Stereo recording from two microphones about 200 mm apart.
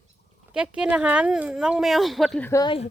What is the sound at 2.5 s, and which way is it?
Speech, 20° left (ahead or behind).